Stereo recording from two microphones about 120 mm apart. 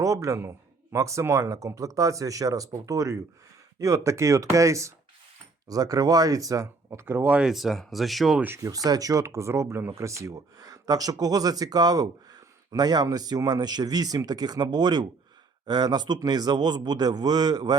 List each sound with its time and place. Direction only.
0.0 s speech: 25° right (ahead or behind); by 8.4 s centre (ahead or behind)
8.4 s speech: 15° right (ahead or behind)
8.6 s speech: 30° right (ahead or behind)